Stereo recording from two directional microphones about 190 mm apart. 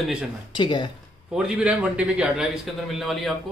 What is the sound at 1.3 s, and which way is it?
Speech, 5° right (ahead or behind).